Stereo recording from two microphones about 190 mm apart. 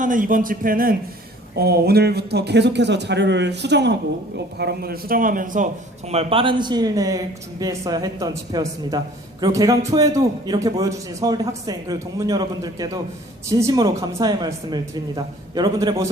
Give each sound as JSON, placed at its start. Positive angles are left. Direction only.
{"t": 0.0, "sound": "a man's voice", "side_deg": -45}